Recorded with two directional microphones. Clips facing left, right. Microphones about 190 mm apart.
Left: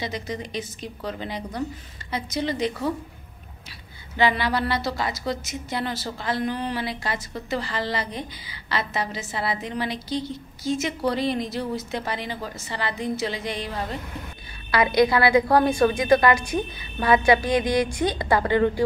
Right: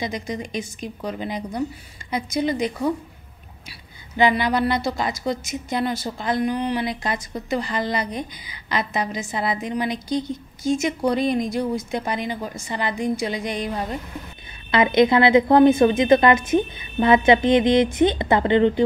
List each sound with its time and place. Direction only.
0.0 s speech: 15° right (ahead or behind)
4.2 s a woman's voice: 15° right (ahead or behind)